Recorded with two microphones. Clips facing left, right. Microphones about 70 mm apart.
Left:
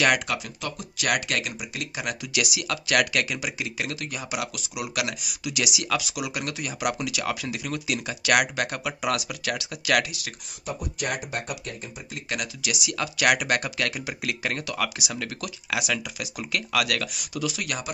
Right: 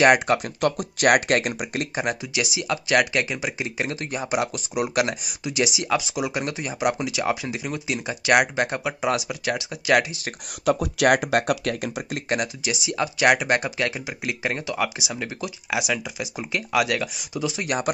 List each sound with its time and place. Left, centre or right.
0.0 s speech: right
0.6 s speech: right
2.3 s speech: right
10.6 s speech: right
12.3 s speech: right